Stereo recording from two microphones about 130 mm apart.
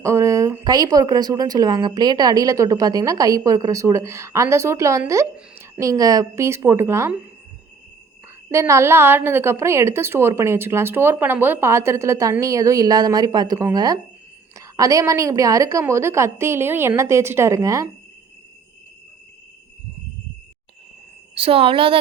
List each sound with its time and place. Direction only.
0.0 s speech: 20° right (ahead or behind)
8.4 s speech: 20° right (ahead or behind)
21.3 s a woman's voice: 45° right (ahead or behind)